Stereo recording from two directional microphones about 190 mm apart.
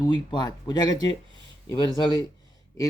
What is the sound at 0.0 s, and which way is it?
Speech, 25° left (ahead or behind).